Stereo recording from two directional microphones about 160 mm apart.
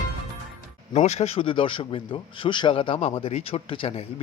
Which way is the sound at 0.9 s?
45° left (ahead or behind).